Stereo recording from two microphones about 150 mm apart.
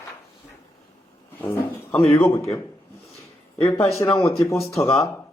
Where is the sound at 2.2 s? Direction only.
20° left (ahead or behind).